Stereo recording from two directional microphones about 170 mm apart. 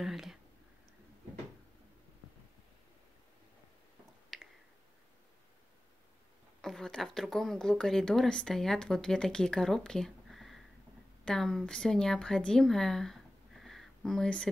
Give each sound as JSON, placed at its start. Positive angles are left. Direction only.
{"t": 0.0, "sound": "a sound", "side_deg": 0}
{"t": 4.3, "sound": "finger snapping", "side_deg": 0}
{"t": 6.6, "sound": "a woman's voice", "side_deg": 5}